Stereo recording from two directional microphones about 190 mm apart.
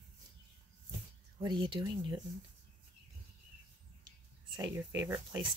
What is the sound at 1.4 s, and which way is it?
Speech, 25° right (ahead or behind).